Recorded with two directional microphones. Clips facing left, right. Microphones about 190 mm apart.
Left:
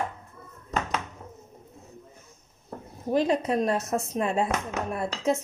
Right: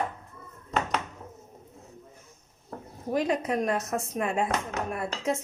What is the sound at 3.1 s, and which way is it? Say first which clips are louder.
A woman's voice: left 3 dB; 30° left (ahead or behind).